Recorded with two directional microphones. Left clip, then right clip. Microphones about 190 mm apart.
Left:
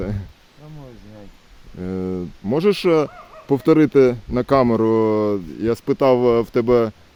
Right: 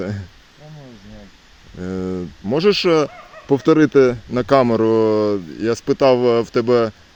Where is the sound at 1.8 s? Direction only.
5° left (ahead or behind).